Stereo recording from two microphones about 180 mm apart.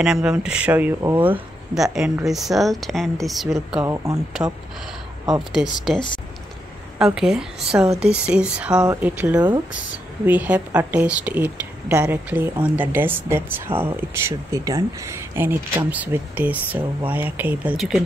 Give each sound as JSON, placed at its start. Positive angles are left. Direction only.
{"t": 0.0, "sound": "speech", "side_deg": -5}
{"t": 3.8, "sound": "speech", "side_deg": -15}
{"t": 5.6, "sound": "speech", "side_deg": -5}
{"t": 7.2, "sound": "speech", "side_deg": -5}